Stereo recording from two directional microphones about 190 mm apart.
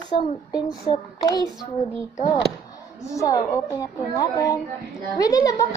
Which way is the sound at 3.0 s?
15° left (ahead or behind).